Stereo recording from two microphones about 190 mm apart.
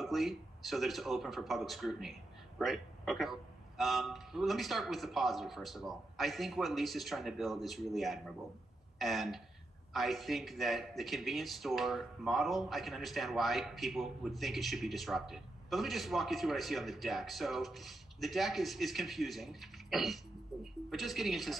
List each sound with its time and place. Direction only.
0.0 s a man's voice: centre (ahead or behind)